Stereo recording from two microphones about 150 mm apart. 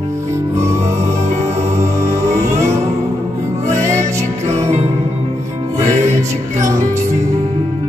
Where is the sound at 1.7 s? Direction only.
20° right (ahead or behind).